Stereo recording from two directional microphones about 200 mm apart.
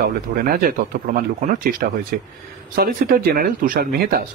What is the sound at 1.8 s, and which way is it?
A man's voice, 50° right (ahead or behind).